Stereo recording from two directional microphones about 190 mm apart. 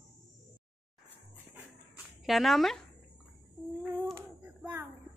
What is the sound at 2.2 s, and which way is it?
Speech, centre (ahead or behind).